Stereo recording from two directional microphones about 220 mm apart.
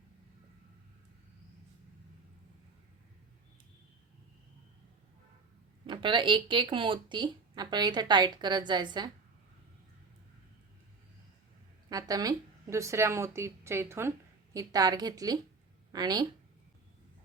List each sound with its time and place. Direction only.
5.8 s speech: 20° right (ahead or behind)
11.9 s speech: 15° right (ahead or behind)